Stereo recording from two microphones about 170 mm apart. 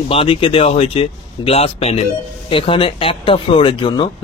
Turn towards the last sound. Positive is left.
turn(degrees=30)  # may be behind; listen again after turning